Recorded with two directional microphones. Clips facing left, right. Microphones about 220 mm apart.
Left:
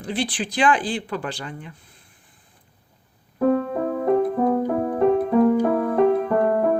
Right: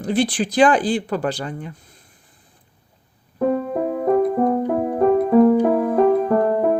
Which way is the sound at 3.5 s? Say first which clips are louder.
Right 1 dB; 10° right (ahead or behind).